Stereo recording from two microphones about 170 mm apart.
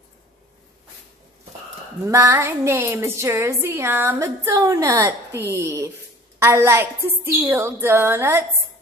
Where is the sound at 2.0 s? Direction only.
15° right (ahead or behind).